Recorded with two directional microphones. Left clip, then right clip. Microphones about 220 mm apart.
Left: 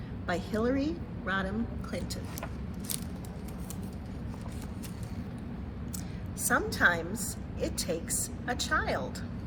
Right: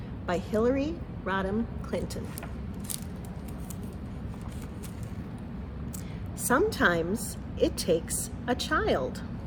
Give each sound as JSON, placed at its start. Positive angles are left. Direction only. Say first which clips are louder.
{"t": 0.3, "sound": "a woman's voice", "louder": "right 4 dB", "side_deg": -25}
{"t": 6.5, "sound": "a woman's voice", "louder": "right 2 dB", "side_deg": -45}